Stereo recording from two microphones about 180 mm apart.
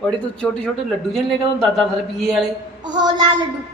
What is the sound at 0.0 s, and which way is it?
Speech, 5° left (ahead or behind).